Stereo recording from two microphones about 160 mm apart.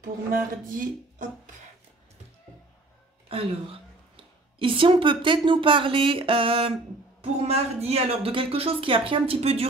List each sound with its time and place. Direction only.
0.3 s speech: 55° right (ahead or behind)
4.2 s a woman's voice: 35° right (ahead or behind)